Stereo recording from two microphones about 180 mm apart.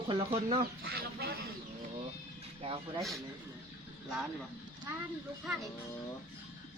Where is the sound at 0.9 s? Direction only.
60° right (ahead or behind).